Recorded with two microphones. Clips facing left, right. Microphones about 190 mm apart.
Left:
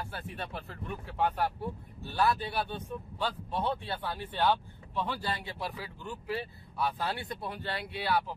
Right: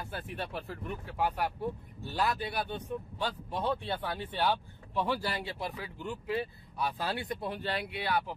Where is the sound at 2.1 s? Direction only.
15° right (ahead or behind).